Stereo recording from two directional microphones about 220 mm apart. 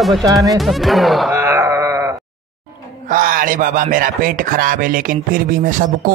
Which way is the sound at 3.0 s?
40° right (ahead or behind).